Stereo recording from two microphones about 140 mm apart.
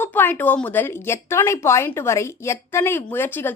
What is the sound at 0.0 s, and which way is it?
A woman's voice, 15° left (ahead or behind).